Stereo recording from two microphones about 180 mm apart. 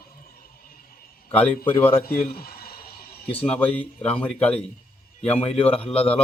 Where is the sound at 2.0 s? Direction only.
55° left (ahead or behind).